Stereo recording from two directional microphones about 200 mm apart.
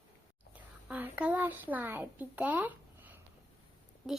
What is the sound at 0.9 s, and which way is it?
Speech, 5° right (ahead or behind).